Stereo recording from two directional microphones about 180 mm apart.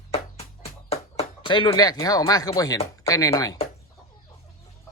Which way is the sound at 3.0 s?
20° left (ahead or behind).